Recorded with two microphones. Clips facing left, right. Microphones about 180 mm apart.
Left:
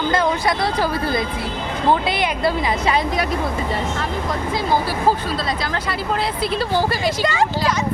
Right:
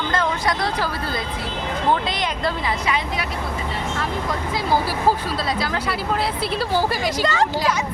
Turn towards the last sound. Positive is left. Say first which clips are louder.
# left 1 dB
turn(degrees=10)  # may be behind; listen again after turning